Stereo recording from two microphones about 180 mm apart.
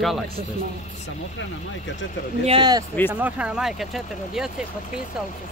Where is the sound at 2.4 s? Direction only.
25° right (ahead or behind).